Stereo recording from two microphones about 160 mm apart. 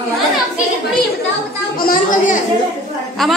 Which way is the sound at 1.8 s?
65° left (ahead or behind).